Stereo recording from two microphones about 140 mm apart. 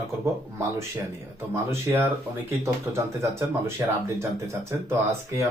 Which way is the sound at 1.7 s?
20° right (ahead or behind).